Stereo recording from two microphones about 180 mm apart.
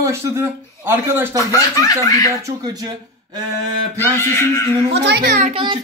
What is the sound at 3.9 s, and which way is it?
Speech, 15° left (ahead or behind).